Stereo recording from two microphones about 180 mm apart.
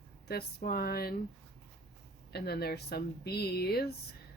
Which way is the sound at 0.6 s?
55° left (ahead or behind).